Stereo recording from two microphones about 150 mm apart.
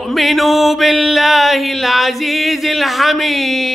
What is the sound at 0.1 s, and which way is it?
Music, centre (ahead or behind).